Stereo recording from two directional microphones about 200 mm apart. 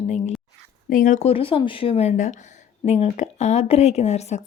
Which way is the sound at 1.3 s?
25° left (ahead or behind).